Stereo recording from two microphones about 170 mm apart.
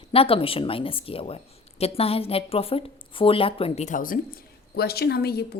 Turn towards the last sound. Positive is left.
turn(degrees=70)  # may be behind; listen again after turning